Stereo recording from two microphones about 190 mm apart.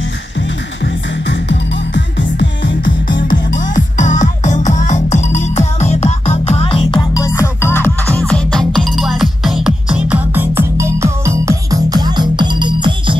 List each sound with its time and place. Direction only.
1.2 s music: 70° left (ahead or behind)
3.3 s music: 45° left (ahead or behind)
6.9 s music: 20° left (ahead or behind); by 13.2 s 25° right (ahead or behind)